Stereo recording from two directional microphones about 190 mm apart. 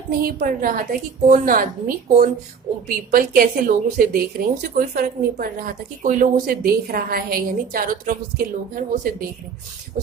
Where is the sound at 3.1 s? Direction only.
50° right (ahead or behind).